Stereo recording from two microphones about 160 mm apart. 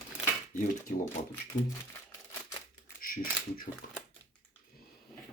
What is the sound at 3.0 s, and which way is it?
Speech, 60° left (ahead or behind).